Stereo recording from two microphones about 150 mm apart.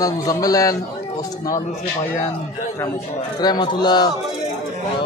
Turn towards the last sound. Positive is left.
turn(degrees=30)  # may be behind; listen again after turning